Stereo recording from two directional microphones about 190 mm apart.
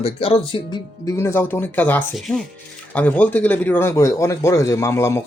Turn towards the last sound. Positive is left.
turn(degrees=15)  # may be behind; listen again after turning